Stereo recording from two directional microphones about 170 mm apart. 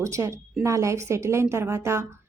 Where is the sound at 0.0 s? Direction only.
15° right (ahead or behind).